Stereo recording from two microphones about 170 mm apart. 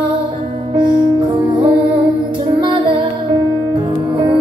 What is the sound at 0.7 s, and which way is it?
Music, 25° right (ahead or behind).